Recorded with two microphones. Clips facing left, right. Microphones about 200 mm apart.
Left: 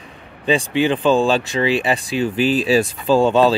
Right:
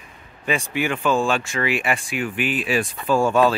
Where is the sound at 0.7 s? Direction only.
30° left (ahead or behind).